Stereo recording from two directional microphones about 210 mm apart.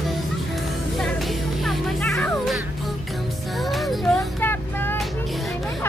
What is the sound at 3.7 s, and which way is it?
Music, centre (ahead or behind).